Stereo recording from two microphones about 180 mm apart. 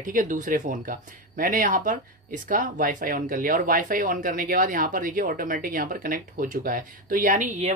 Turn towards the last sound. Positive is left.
turn(degrees=-40)  # may be behind; listen again after turning